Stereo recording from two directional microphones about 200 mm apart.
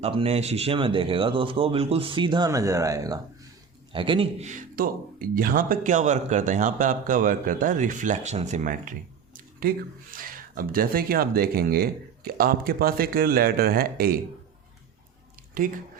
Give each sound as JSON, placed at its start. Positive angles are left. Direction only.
{"t": 0.0, "sound": "speech", "side_deg": -30}
{"t": 15.6, "sound": "speech", "side_deg": -45}